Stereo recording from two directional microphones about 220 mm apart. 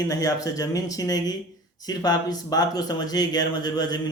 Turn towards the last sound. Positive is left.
turn(degrees=20)  # may be behind; listen again after turning